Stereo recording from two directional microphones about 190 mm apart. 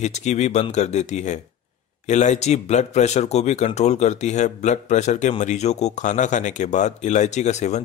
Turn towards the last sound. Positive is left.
turn(degrees=35)  # may be behind; listen again after turning